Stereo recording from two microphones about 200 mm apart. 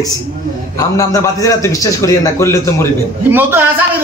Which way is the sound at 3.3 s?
10° right (ahead or behind).